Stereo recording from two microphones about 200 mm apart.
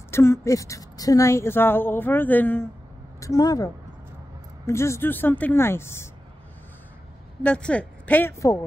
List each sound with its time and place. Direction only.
0.1 s speech: 15° left (ahead or behind)
7.4 s speech: 5° left (ahead or behind)